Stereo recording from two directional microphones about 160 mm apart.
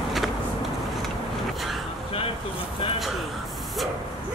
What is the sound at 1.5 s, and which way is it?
Vehicle, centre (ahead or behind).